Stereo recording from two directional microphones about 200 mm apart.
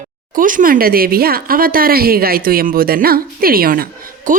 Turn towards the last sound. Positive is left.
turn(degrees=-45)  # may be behind; listen again after turning